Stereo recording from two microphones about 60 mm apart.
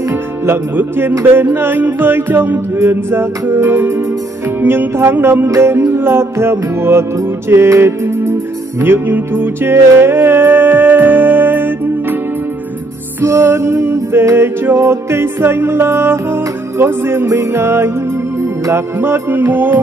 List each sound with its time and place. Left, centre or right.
0.1 s music: right
5.5 s music: right
8.8 s music: right
13.2 s music: right
17.3 s music: right
18.9 s music: right